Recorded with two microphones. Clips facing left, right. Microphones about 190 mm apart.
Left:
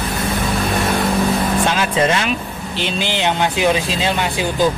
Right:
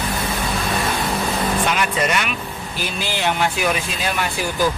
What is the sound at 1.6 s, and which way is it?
Speech, 25° left (ahead or behind).